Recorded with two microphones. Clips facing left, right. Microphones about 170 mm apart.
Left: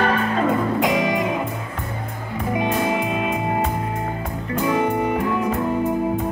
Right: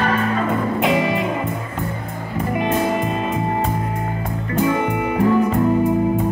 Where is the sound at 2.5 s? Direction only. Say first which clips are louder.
Right 1 dB; centre (ahead or behind).